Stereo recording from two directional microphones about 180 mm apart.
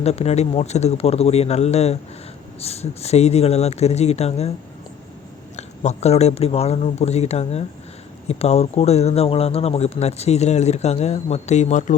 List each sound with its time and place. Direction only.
0.0 s speech: 35° left (ahead or behind)
5.5 s speech: 40° left (ahead or behind)